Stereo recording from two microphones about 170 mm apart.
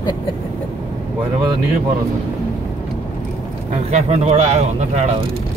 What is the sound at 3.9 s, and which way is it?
A man's voice, 40° right (ahead or behind).